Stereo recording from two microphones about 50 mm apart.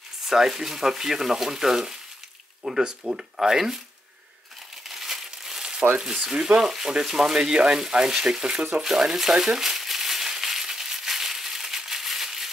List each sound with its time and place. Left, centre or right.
0.3 s speech: centre
4.8 s crumpling: centre
6.2 s speech: centre
8.8 s crumpling: centre